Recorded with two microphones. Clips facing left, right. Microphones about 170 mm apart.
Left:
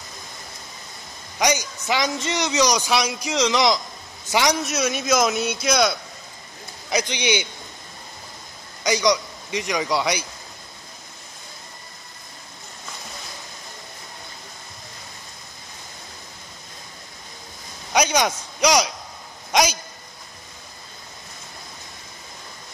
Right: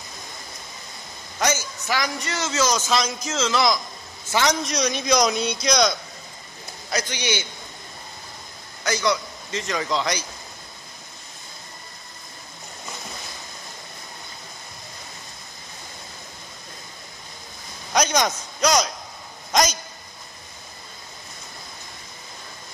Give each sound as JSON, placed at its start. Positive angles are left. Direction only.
{"t": 1.4, "sound": "a man's voice", "side_deg": 15}
{"t": 6.9, "sound": "a man's voice", "side_deg": 15}
{"t": 8.8, "sound": "a man's voice", "side_deg": 15}
{"t": 17.9, "sound": "a sound", "side_deg": 10}